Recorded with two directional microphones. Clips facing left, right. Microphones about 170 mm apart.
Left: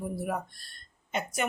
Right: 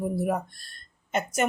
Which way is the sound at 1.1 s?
45° right (ahead or behind).